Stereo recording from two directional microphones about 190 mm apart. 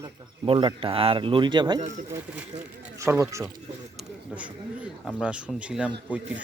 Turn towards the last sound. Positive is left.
turn(degrees=-10)  # may be behind; listen again after turning